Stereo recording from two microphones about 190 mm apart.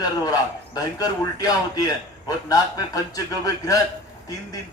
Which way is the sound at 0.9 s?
20° left (ahead or behind).